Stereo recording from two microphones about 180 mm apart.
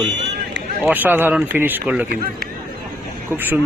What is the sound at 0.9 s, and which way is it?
Speech, 10° right (ahead or behind).